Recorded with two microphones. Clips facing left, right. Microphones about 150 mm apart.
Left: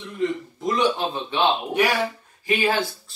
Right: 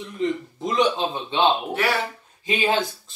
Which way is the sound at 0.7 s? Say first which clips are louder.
Even; 20° right (ahead or behind).